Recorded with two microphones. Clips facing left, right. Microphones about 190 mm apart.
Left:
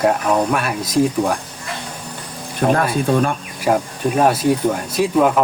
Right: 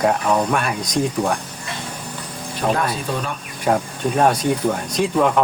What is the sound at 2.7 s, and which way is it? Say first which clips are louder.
Speech: left 6 dB; 55° left (ahead or behind).